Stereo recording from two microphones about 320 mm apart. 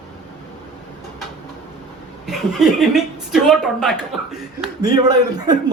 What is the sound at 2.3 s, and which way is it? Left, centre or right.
A woman's voice, centre.